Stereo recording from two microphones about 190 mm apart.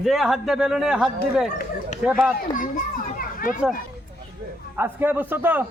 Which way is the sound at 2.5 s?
45° left (ahead or behind).